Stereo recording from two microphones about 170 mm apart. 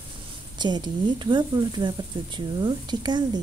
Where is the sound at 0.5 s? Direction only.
25° right (ahead or behind).